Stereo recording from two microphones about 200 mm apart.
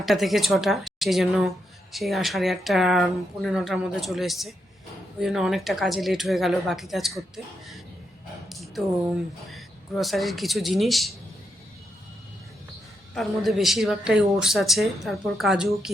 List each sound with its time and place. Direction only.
0.0 s speech: centre (ahead or behind)
13.1 s speech: centre (ahead or behind)